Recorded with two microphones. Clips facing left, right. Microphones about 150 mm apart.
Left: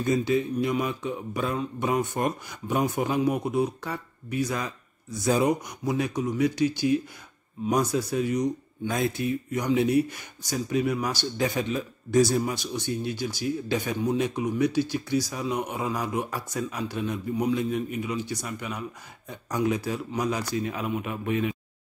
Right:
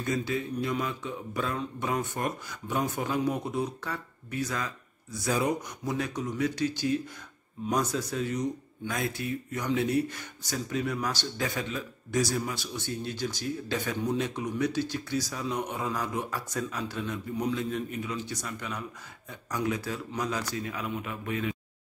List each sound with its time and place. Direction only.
0.0 s speech: 20° left (ahead or behind)
8.8 s speech: 25° left (ahead or behind)